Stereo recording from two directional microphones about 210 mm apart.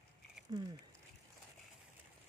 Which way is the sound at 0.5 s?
20° right (ahead or behind).